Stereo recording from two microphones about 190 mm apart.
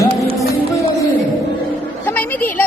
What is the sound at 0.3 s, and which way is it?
Music, 15° left (ahead or behind).